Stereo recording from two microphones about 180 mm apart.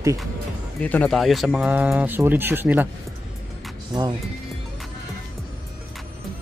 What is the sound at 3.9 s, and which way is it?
Speech, 25° right (ahead or behind).